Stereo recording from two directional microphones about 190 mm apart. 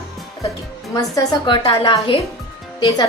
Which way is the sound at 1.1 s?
20° left (ahead or behind).